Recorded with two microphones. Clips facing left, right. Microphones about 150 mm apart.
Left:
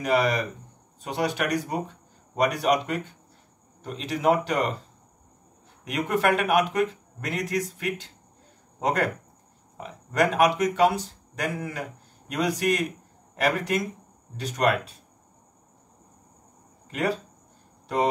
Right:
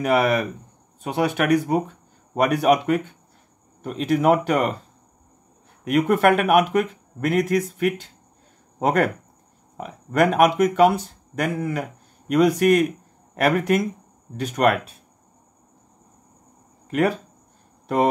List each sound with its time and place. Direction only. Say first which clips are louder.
0.0 s speech: right 4 dB; 60° right (ahead or behind)
5.9 s speech: right 6 dB; 55° right (ahead or behind)